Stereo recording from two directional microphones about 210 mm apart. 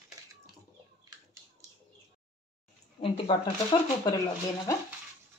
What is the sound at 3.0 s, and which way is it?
Speech, 25° left (ahead or behind).